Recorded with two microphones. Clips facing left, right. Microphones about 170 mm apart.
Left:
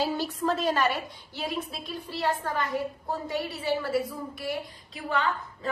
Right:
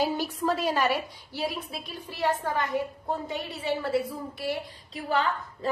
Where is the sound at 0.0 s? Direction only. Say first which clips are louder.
Right 1 dB; 10° right (ahead or behind).